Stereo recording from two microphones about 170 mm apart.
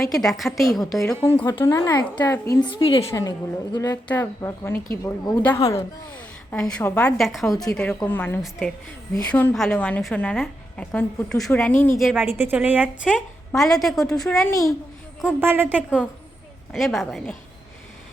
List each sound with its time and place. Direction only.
0.0 s a woman's voice: centre (ahead or behind)
1.2 s a woman's voice: 15° left (ahead or behind)
2.6 s a woman's voice: 30° left (ahead or behind)
3.1 s a woman's voice: 20° left (ahead or behind)
6.1 s a woman's voice: 5° left (ahead or behind)
7.9 s a woman's voice: 10° left (ahead or behind)
11.9 s a woman's voice: centre (ahead or behind)
12.2 s a woman's voice: 10° right (ahead or behind)
14.4 s a woman's voice: 20° left (ahead or behind)
15.2 s a woman's voice: 10° right (ahead or behind)